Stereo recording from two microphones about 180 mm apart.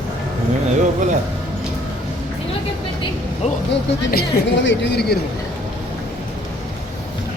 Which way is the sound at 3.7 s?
65° left (ahead or behind).